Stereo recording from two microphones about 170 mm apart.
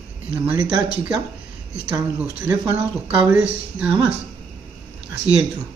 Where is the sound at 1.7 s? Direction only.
10° right (ahead or behind).